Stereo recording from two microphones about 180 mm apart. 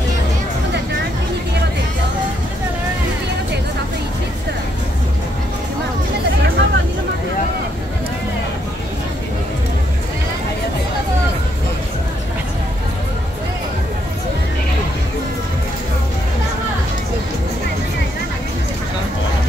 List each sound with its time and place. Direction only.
6.6 s vehicle: 75° right (ahead or behind)